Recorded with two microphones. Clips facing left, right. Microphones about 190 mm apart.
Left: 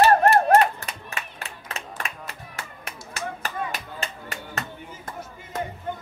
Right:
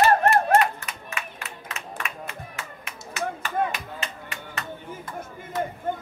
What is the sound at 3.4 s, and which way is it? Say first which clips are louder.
Music: right 4 dB; 40° left (ahead or behind).